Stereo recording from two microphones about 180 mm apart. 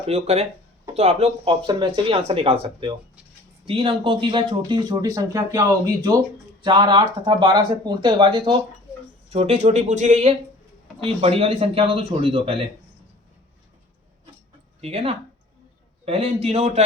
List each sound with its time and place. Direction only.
0.1 s speech: 35° right (ahead or behind)
14.8 s speech: 35° right (ahead or behind)